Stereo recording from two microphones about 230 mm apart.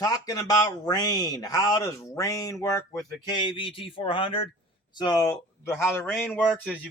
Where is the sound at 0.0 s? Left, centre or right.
Centre.